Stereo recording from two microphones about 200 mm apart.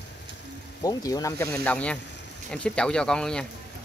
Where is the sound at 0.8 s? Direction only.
20° left (ahead or behind).